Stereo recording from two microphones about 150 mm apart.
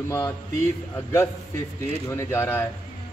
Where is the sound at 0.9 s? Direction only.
15° left (ahead or behind).